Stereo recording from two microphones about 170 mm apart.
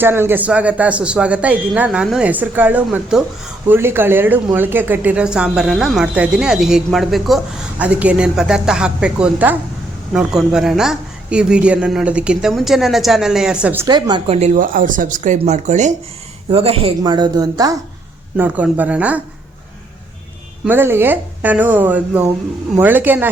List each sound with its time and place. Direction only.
0.0 s a woman's voice: 15° right (ahead or behind)
13.8 s a woman's voice: 25° right (ahead or behind)
14.3 s a woman's voice: 40° right (ahead or behind); by 17.7 s 20° right (ahead or behind)
18.3 s speech: 10° right (ahead or behind)
20.7 s speech: 15° right (ahead or behind)